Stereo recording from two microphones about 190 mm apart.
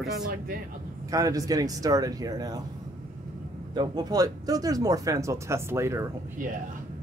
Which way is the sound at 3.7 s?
20° right (ahead or behind).